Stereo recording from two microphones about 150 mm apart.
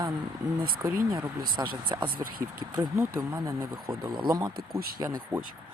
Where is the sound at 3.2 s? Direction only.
20° right (ahead or behind).